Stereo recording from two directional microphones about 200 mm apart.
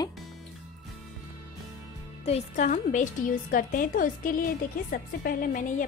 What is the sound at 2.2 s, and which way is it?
A woman's voice, 35° left (ahead or behind).